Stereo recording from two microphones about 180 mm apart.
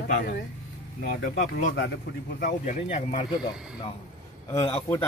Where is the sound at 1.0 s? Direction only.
45° left (ahead or behind).